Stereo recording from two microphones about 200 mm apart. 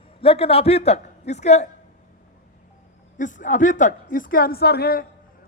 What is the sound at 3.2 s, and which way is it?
A woman's voice, 40° left (ahead or behind).